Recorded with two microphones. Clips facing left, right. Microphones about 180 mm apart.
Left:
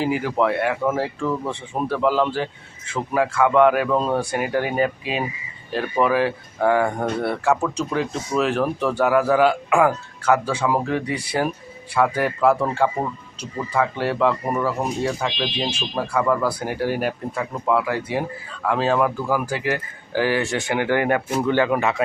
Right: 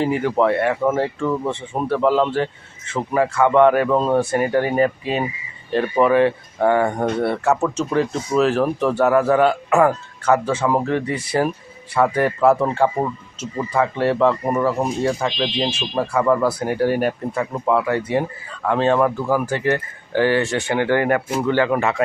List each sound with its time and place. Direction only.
0.0 s speech: centre (ahead or behind); by 22.0 s 15° left (ahead or behind)